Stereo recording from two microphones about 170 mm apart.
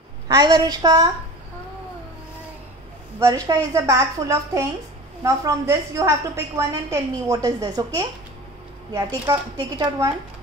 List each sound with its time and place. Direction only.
0.3 s a woman's voice: 25° right (ahead or behind)
3.2 s a woman's voice: 20° right (ahead or behind)